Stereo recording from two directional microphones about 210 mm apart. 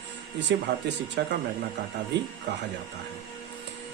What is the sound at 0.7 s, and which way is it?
Speech, 55° right (ahead or behind).